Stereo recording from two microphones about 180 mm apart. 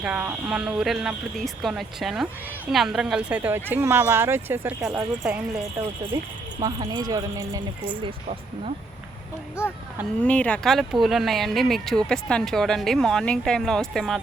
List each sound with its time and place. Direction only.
0.0 s speech: 10° right (ahead or behind)
6.6 s speech: 20° right (ahead or behind)
10.2 s speech: 5° left (ahead or behind)